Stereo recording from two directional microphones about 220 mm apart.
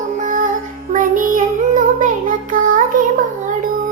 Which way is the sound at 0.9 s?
35° right (ahead or behind).